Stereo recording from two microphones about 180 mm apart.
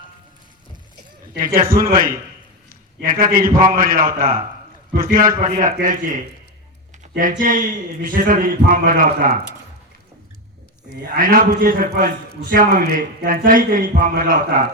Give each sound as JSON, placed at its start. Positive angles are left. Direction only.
{"t": 1.4, "sound": "a man's voice", "side_deg": -50}
{"t": 7.2, "sound": "a man's voice", "side_deg": -50}
{"t": 10.9, "sound": "a man's voice", "side_deg": -60}